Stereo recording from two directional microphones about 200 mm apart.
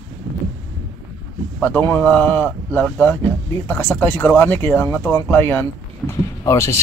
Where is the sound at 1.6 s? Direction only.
10° left (ahead or behind).